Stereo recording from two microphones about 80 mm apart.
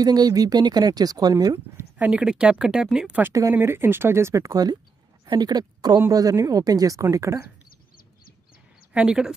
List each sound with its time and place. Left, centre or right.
0.0 s speech: right
2.0 s a woman's voice: centre
3.5 s speech: right
4.5 s speech: right
6.1 s speech: right
8.9 s a woman's voice: centre